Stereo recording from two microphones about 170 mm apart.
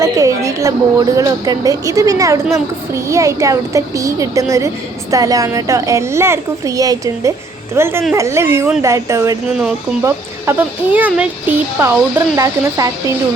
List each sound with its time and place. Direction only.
0.0 s a woman's voice: 20° right (ahead or behind)